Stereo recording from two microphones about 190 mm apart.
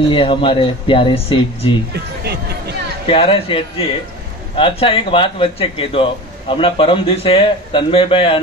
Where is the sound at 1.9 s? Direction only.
60° right (ahead or behind).